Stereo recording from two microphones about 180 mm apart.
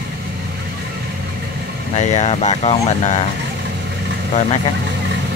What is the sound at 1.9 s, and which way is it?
Speech, 40° left (ahead or behind).